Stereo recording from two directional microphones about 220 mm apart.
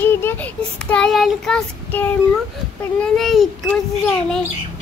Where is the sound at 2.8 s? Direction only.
5° left (ahead or behind).